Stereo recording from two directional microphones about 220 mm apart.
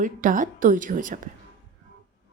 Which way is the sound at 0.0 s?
35° right (ahead or behind).